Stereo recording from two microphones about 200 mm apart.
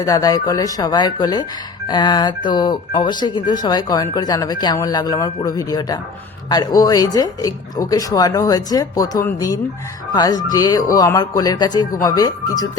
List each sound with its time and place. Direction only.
0.0 s speech: 20° left (ahead or behind)